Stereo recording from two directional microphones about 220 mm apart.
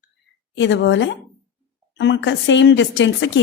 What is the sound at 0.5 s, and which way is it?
A woman's voice, 55° left (ahead or behind).